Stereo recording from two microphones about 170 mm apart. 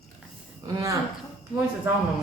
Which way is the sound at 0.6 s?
20° right (ahead or behind).